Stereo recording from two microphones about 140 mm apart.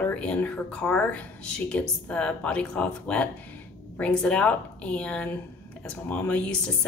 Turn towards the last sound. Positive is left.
turn(degrees=10)  # may be behind; listen again after turning